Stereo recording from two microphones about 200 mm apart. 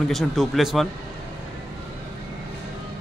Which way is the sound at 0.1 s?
Centre (ahead or behind).